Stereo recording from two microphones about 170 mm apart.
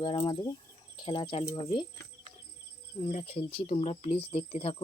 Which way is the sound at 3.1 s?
35° left (ahead or behind).